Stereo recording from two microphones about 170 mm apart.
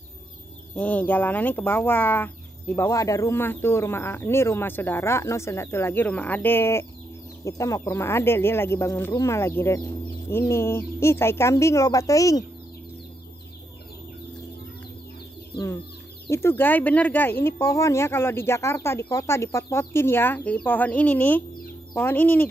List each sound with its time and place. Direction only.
0.7 s speech: 10° left (ahead or behind)
15.5 s speech: 20° left (ahead or behind)